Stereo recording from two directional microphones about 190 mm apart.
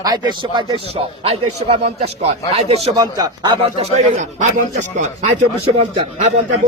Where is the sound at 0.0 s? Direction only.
20° right (ahead or behind).